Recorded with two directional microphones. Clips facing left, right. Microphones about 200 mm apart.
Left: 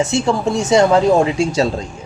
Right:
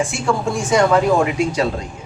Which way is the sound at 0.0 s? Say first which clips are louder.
Left 3 dB; 25° left (ahead or behind).